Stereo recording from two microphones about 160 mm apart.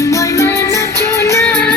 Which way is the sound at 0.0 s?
20° left (ahead or behind).